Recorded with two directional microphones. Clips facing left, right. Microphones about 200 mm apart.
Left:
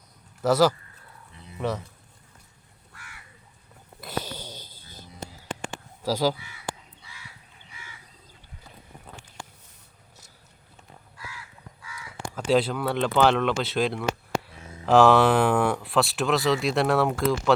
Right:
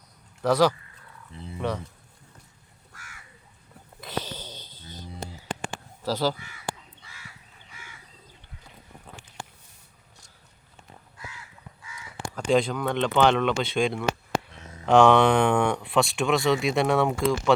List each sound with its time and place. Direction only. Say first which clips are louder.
0.4 s speech: left 1 dB; 5° left (ahead or behind)
2.9 s crow: left 1 dB; 45° right (ahead or behind)
4.0 s wheeze: even; 10° left (ahead or behind)
6.0 s speech: left 2 dB; 10° left (ahead or behind)
6.3 s speech: right 1 dB; 50° right (ahead or behind)
7.7 s bird: left 1 dB; 50° right (ahead or behind)
12.3 s speech: even; 5° left (ahead or behind)